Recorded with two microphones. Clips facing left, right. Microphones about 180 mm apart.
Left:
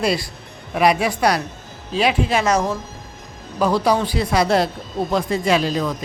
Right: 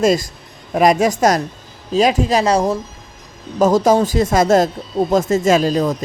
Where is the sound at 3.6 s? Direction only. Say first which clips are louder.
Right 5 dB; 45° right (ahead or behind).